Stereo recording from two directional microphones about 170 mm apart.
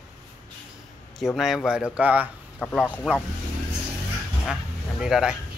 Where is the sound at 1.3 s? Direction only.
Centre (ahead or behind).